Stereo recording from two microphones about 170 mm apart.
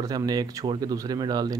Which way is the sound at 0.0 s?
20° right (ahead or behind).